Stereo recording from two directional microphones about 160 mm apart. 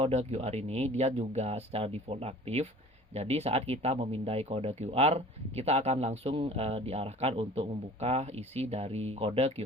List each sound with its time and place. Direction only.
0.0 s speech: 45° right (ahead or behind)